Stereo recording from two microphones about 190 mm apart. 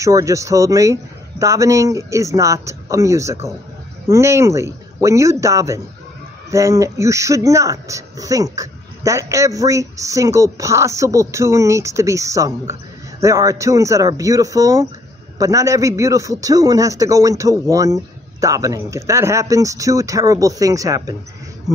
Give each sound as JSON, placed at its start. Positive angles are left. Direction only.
{"t": 0.0, "sound": "speech", "side_deg": -15}